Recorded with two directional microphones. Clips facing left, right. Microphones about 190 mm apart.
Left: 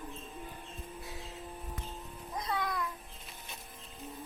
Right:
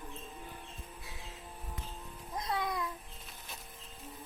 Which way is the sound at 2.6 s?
20° right (ahead or behind).